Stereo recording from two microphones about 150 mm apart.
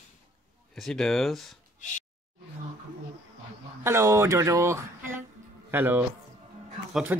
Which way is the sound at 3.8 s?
15° right (ahead or behind).